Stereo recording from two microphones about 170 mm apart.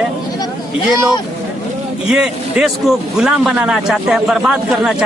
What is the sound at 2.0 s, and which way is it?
A man's voice, 5° right (ahead or behind).